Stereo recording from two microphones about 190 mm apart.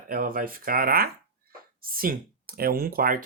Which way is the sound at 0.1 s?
50° right (ahead or behind).